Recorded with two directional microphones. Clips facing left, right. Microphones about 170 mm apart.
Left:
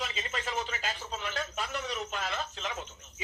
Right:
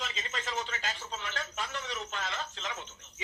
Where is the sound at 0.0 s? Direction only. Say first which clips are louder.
Left 3 dB; 10° left (ahead or behind).